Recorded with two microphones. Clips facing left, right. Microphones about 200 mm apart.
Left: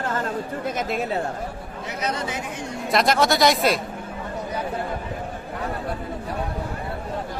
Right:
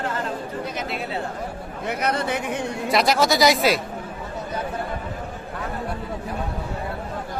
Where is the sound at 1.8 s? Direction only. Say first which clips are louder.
Right 4 dB; 60° right (ahead or behind).